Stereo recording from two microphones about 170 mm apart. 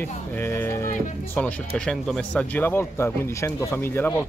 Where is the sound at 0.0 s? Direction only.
15° left (ahead or behind).